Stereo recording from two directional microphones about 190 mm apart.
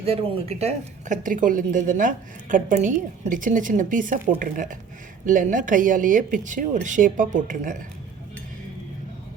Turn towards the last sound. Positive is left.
turn(degrees=-45)  # may be behind; listen again after turning